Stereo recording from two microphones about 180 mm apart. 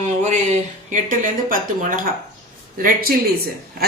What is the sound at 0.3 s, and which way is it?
A woman's voice, 40° right (ahead or behind).